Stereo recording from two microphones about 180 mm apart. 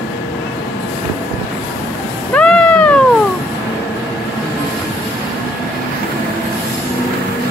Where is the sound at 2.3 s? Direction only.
5° left (ahead or behind).